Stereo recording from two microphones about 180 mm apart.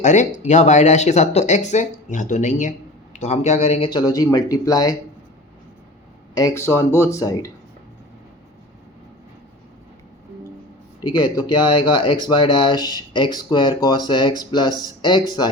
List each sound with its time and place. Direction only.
0.0 s speech: 40° left (ahead or behind); by 4.9 s 20° left (ahead or behind)
6.3 s speech: 15° left (ahead or behind)
11.0 s speech: 25° left (ahead or behind)